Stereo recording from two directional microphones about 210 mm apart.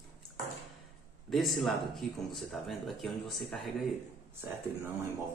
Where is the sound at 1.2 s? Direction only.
Centre (ahead or behind).